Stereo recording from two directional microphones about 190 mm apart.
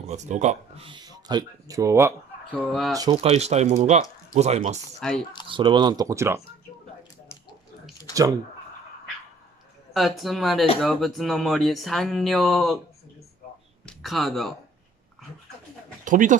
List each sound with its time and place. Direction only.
0.0 s speech: 35° right (ahead or behind); by 3.2 s 20° right (ahead or behind)
3.2 s speech: 35° right (ahead or behind)
5.0 s speech: 5° left (ahead or behind)
5.5 s speech: 25° right (ahead or behind)
8.1 s speech: 15° right (ahead or behind)
9.9 s speech: centre (ahead or behind)
13.8 s speech: centre (ahead or behind)
16.0 s speech: 45° right (ahead or behind)